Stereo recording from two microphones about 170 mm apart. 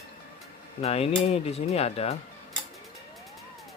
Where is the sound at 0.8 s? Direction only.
40° left (ahead or behind).